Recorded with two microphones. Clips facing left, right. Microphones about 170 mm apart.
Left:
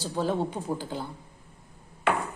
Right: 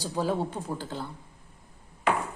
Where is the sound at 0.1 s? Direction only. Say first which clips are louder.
Left 1 dB; 5° right (ahead or behind).